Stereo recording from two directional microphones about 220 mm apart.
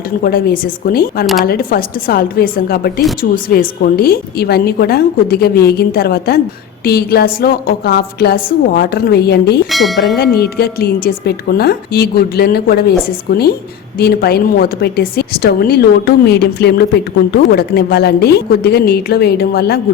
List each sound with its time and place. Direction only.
0.2 s a woman's voice: 45° left (ahead or behind)
9.7 s bell: centre (ahead or behind)
10.3 s a woman's voice: 45° left (ahead or behind)
14.0 s a woman's voice: 45° left (ahead or behind)